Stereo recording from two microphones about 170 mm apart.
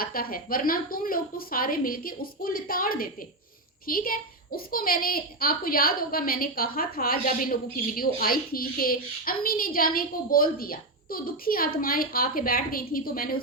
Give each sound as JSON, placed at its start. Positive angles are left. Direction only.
{"t": 0.0, "sound": "a woman's voice", "side_deg": 60}